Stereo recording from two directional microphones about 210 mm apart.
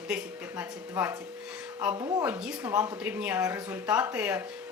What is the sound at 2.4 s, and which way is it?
Speech, 5° right (ahead or behind).